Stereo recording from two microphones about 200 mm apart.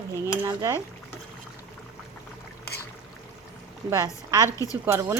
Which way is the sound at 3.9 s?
15° right (ahead or behind).